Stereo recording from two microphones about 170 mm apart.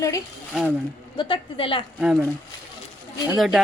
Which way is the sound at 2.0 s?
5° right (ahead or behind).